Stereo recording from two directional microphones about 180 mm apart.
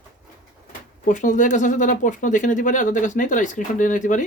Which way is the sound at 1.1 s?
45° left (ahead or behind).